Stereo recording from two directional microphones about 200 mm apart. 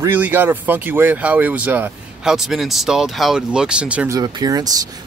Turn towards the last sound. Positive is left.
turn(degrees=-20)  # may be behind; listen again after turning